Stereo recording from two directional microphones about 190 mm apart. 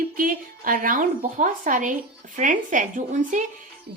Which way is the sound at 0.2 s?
45° right (ahead or behind).